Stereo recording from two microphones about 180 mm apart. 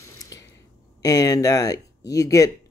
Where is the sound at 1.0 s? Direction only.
20° left (ahead or behind).